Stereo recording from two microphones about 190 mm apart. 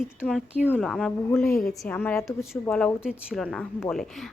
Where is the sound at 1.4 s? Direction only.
15° left (ahead or behind).